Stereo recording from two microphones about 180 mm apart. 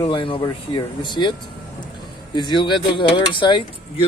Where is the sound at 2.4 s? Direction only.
25° left (ahead or behind).